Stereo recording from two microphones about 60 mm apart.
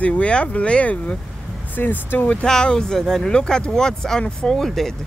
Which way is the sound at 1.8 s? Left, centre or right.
Left.